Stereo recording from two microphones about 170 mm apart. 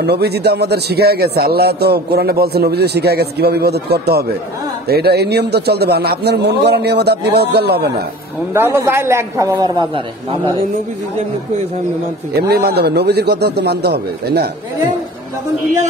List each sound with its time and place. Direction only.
0.0 s a man's voice: 75° right (ahead or behind)
8.5 s a man's voice: 15° right (ahead or behind)
12.4 s a man's voice: 70° right (ahead or behind)